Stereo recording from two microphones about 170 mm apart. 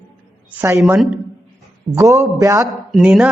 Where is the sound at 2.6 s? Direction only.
Centre (ahead or behind).